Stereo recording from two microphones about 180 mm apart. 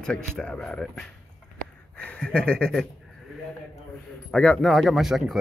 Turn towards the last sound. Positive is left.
turn(degrees=0)  # may be behind; listen again after turning